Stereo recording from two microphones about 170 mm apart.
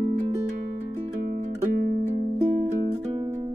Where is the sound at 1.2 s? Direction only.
60° right (ahead or behind).